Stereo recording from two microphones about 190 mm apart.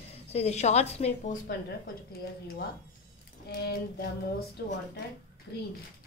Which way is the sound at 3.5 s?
55° left (ahead or behind).